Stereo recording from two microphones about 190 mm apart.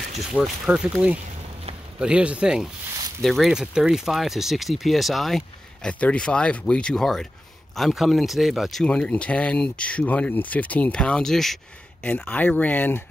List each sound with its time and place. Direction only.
0.3 s speech: 5° right (ahead or behind)